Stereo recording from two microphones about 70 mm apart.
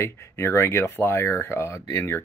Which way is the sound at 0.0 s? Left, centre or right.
Left.